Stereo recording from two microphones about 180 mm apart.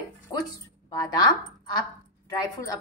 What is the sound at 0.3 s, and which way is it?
Music, 20° left (ahead or behind).